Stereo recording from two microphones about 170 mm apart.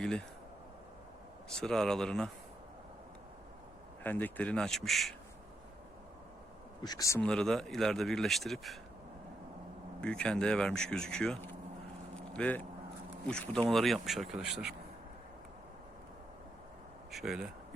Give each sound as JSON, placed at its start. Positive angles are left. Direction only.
{"t": 0.0, "sound": "speech", "side_deg": 5}
{"t": 1.5, "sound": "speech", "side_deg": 5}
{"t": 4.0, "sound": "speech", "side_deg": 10}
{"t": 6.8, "sound": "speech", "side_deg": 20}
{"t": 7.2, "sound": "speech", "side_deg": 5}
{"t": 10.0, "sound": "speech", "side_deg": 5}
{"t": 17.1, "sound": "speech", "side_deg": 0}